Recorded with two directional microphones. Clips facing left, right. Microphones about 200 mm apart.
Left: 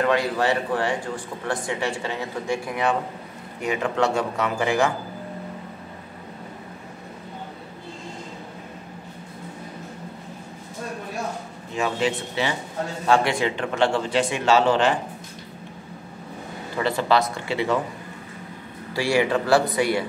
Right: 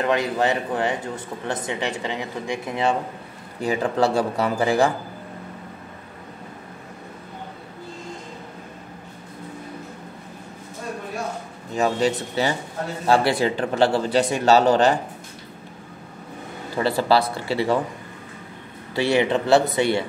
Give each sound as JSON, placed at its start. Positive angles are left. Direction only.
{"t": 0.0, "sound": "speech", "side_deg": -20}
{"t": 2.7, "sound": "a man's voice", "side_deg": -25}
{"t": 11.7, "sound": "a man's voice", "side_deg": -40}
{"t": 16.7, "sound": "a man's voice", "side_deg": -35}
{"t": 18.9, "sound": "speech", "side_deg": -20}